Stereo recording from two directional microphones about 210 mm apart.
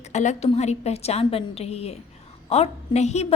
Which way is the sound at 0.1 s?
35° left (ahead or behind).